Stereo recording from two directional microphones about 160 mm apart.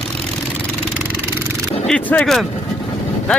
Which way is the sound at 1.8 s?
10° left (ahead or behind).